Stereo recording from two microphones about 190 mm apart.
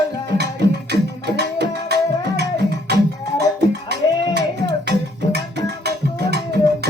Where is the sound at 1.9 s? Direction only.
60° right (ahead or behind).